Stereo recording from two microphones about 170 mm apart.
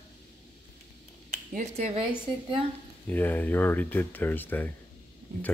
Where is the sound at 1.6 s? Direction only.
40° right (ahead or behind).